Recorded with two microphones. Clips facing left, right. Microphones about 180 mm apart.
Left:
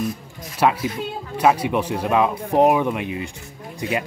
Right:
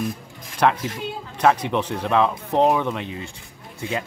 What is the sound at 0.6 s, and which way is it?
Speech, 5° left (ahead or behind).